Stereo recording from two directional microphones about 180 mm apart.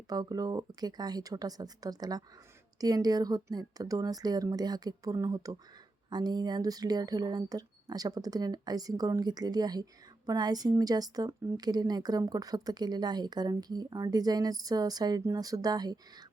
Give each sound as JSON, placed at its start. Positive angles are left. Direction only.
{"t": 0.1, "sound": "a woman's voice", "side_deg": -20}